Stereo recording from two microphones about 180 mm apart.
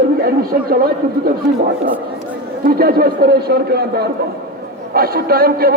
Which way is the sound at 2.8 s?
55° right (ahead or behind).